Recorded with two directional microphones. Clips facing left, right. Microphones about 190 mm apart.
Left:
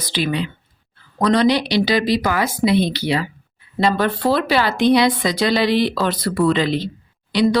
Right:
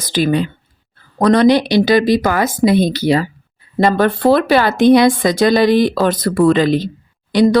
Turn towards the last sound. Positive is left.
turn(degrees=-45)  # may be behind; listen again after turning